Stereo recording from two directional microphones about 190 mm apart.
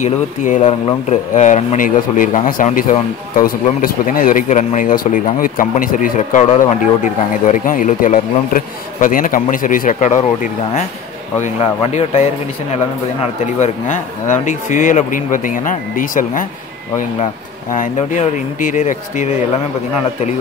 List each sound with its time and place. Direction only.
0.0 s speech: 40° left (ahead or behind)